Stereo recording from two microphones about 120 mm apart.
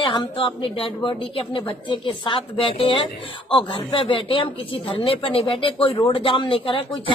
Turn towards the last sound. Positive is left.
turn(degrees=50)  # may be behind; listen again after turning